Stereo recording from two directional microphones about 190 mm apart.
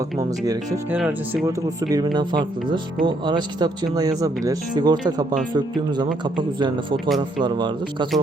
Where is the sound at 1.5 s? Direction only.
20° right (ahead or behind).